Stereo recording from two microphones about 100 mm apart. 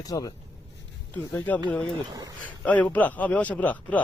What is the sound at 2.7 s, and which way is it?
Speech, 15° left (ahead or behind).